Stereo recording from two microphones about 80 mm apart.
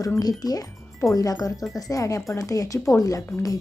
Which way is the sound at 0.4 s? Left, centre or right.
Left.